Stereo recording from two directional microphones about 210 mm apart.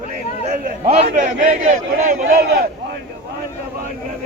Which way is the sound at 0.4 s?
30° right (ahead or behind).